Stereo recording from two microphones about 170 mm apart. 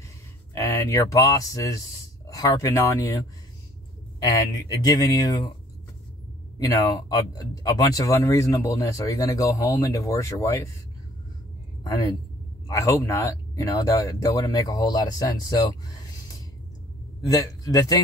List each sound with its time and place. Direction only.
0.6 s speech: 15° left (ahead or behind)
4.3 s speech: 20° left (ahead or behind)
6.6 s speech: 20° left (ahead or behind)
11.8 s speech: 20° left (ahead or behind)
17.3 s speech: 20° left (ahead or behind)